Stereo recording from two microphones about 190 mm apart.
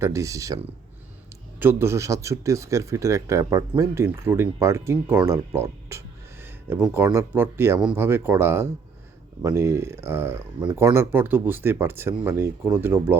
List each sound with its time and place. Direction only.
0.0 s speech: 15° right (ahead or behind)